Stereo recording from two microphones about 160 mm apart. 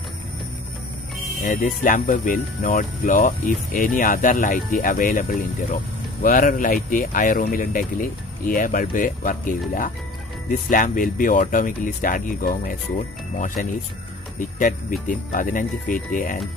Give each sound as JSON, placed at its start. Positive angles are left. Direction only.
{"t": 1.4, "sound": "speech", "side_deg": 55}
{"t": 6.2, "sound": "speech", "side_deg": 60}